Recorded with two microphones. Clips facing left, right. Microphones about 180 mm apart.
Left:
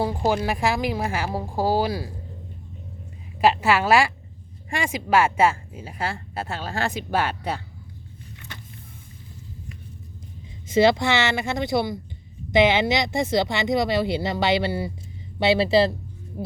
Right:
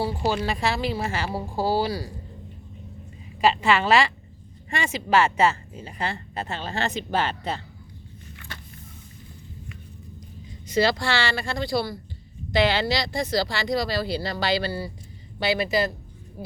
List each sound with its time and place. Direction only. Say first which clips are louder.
0.3 s speech: left 3 dB; 10° left (ahead or behind)
3.5 s speech: even; 10° left (ahead or behind)
10.7 s speech: left 4 dB; 20° left (ahead or behind)